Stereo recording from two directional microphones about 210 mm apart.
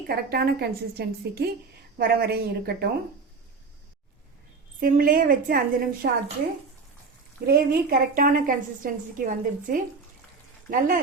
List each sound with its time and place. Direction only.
0.1 s a woman's voice: 50° right (ahead or behind)
4.8 s a woman's voice: 40° right (ahead or behind)
7.4 s a woman's voice: 45° right (ahead or behind)